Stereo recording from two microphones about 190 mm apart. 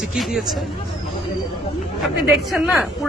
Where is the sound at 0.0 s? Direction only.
Centre (ahead or behind).